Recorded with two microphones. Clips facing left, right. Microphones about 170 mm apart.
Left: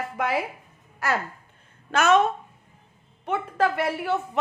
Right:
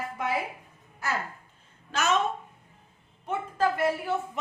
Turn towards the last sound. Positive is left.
turn(degrees=75)  # may be behind; listen again after turning